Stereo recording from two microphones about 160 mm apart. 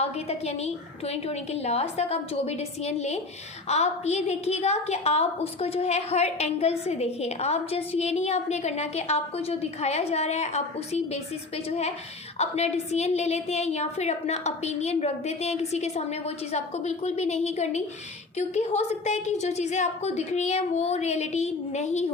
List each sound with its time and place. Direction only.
0.0 s a woman's voice: 40° left (ahead or behind)